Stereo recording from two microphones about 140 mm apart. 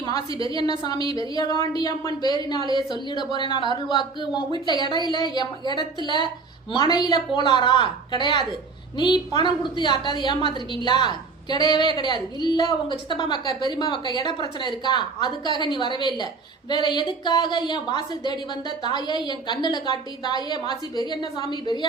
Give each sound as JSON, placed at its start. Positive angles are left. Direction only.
{"t": 0.1, "sound": "a woman's voice", "side_deg": 25}